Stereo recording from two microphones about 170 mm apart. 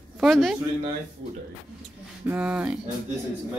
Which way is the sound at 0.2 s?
Centre (ahead or behind).